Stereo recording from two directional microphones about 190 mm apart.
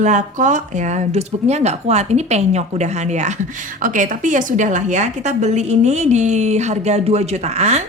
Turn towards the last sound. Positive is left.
turn(degrees=-35)  # may be behind; listen again after turning